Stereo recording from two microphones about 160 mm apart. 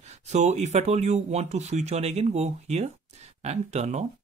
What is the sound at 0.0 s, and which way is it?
Speech, 45° right (ahead or behind).